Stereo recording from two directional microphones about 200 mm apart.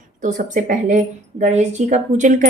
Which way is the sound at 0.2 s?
40° right (ahead or behind).